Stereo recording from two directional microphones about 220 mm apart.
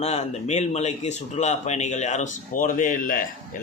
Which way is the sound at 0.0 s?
30° left (ahead or behind).